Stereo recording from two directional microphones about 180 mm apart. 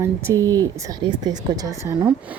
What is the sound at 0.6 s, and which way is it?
Speech, 25° right (ahead or behind).